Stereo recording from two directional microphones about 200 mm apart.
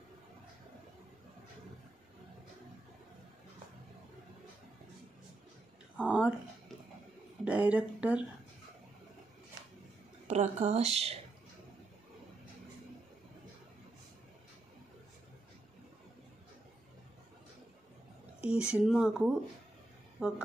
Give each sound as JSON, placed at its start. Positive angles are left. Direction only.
{"t": 5.9, "sound": "a sound", "side_deg": -5}
{"t": 7.4, "sound": "speech", "side_deg": -5}
{"t": 10.2, "sound": "speech", "side_deg": -35}
{"t": 18.4, "sound": "speech", "side_deg": -5}